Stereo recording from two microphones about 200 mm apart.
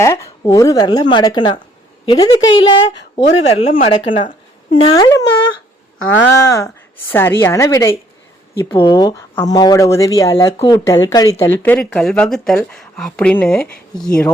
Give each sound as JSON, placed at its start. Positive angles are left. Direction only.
{"t": 0.0, "sound": "speech", "side_deg": 15}
{"t": 2.9, "sound": "speech", "side_deg": 60}
{"t": 3.2, "sound": "speech", "side_deg": 30}